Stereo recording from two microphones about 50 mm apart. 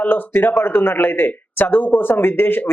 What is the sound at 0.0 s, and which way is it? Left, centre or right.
Speech, left.